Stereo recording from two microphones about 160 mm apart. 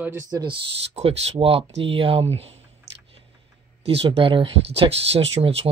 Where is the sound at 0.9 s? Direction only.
40° right (ahead or behind).